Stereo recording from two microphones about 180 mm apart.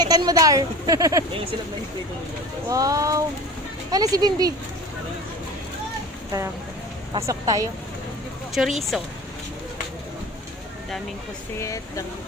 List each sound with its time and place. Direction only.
0.0 s speech: 20° right (ahead or behind)
2.6 s speech: 20° right (ahead or behind)
7.3 s speech: 20° right (ahead or behind)
8.6 s speech: 5° right (ahead or behind)
11.6 s speech: 15° left (ahead or behind)